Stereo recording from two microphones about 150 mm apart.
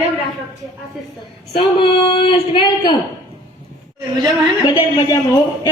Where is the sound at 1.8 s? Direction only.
35° left (ahead or behind).